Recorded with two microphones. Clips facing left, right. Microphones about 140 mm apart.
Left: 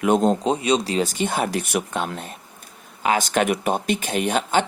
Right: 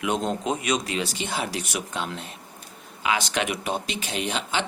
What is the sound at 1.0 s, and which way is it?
Speech, 50° left (ahead or behind).